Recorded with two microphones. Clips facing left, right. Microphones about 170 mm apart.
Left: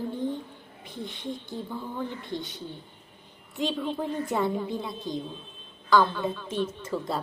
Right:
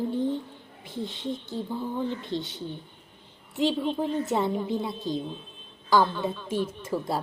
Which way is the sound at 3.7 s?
20° right (ahead or behind).